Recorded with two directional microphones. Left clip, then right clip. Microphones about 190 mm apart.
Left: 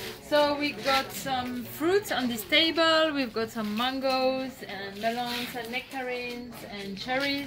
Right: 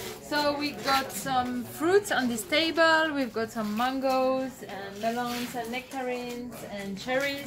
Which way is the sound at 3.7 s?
10° left (ahead or behind).